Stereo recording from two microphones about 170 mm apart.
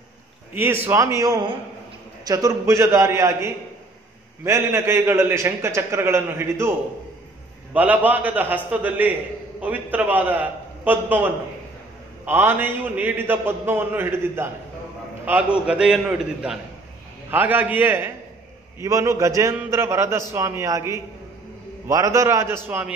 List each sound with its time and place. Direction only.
0.6 s a man's voice: 15° right (ahead or behind)
7.7 s a man's voice: 10° right (ahead or behind)
12.3 s a man's voice: 10° right (ahead or behind)